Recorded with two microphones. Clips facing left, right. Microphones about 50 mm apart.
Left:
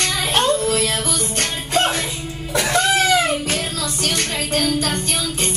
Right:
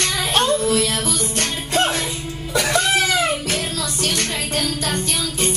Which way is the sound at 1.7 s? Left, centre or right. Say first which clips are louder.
Left 1 dB; left.